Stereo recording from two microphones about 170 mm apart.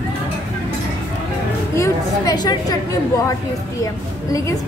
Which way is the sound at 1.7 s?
20° left (ahead or behind).